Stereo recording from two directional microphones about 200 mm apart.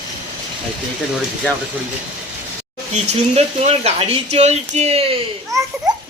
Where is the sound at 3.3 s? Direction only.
30° right (ahead or behind).